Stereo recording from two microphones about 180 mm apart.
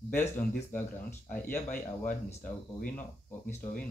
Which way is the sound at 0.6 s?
10° left (ahead or behind).